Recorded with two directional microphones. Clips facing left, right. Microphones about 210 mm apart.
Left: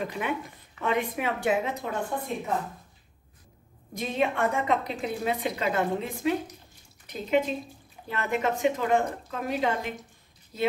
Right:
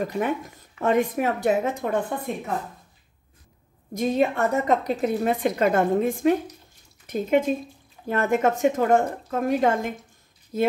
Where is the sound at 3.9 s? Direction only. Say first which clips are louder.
Right 6 dB; 45° right (ahead or behind).